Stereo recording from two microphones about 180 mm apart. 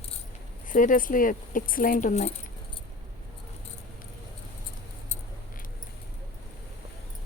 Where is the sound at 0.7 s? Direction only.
50° left (ahead or behind).